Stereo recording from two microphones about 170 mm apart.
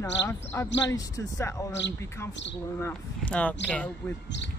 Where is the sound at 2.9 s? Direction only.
5° left (ahead or behind).